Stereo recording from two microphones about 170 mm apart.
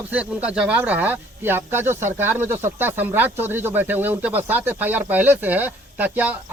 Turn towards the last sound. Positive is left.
turn(degrees=-10)  # may be behind; listen again after turning